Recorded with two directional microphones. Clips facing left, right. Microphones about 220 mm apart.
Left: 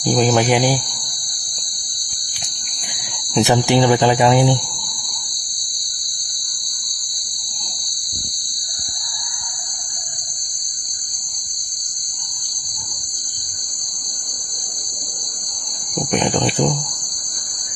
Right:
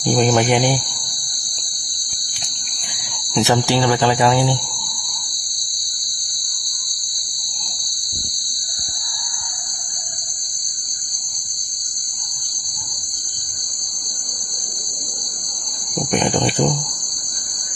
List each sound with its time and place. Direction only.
0.0 s speech: centre (ahead or behind)
3.3 s speech: 15° left (ahead or behind)
16.0 s a sound: centre (ahead or behind)